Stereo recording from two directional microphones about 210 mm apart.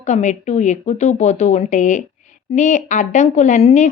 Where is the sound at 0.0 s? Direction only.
35° left (ahead or behind).